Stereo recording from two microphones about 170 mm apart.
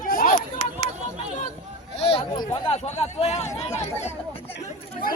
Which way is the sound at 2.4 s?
25° left (ahead or behind).